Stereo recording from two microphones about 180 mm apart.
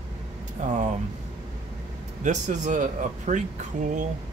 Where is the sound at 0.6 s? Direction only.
40° right (ahead or behind).